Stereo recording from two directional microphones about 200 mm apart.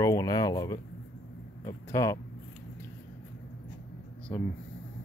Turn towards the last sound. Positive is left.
turn(degrees=10)  # may be behind; listen again after turning